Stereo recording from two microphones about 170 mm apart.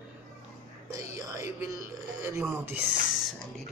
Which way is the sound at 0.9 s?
20° right (ahead or behind).